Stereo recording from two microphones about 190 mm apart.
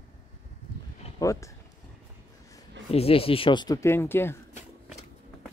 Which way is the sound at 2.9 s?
30° left (ahead or behind).